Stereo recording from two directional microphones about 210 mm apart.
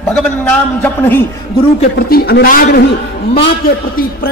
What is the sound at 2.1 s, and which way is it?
Speech, 45° left (ahead or behind).